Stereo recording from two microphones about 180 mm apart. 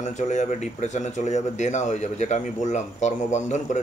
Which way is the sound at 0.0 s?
40° left (ahead or behind).